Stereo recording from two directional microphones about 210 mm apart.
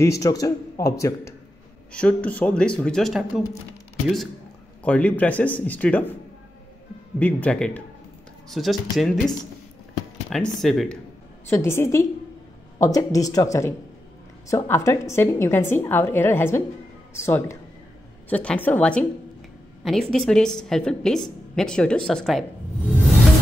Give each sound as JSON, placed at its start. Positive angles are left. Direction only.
{"t": 0.0, "sound": "a woman's voice", "side_deg": 15}
{"t": 4.8, "sound": "a woman's voice", "side_deg": 5}
{"t": 7.2, "sound": "a woman's voice", "side_deg": 10}
{"t": 10.3, "sound": "a woman's voice", "side_deg": 0}
{"t": 11.4, "sound": "a woman's voice", "side_deg": 10}